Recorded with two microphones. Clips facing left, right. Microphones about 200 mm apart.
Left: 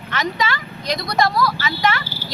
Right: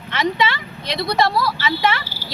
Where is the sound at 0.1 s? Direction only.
25° right (ahead or behind).